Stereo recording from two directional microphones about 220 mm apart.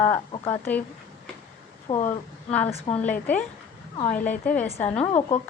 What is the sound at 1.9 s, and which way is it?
Speech, 20° left (ahead or behind).